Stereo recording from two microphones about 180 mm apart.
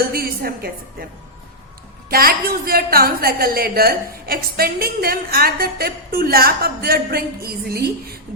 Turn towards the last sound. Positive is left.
turn(degrees=-60)  # may be behind; listen again after turning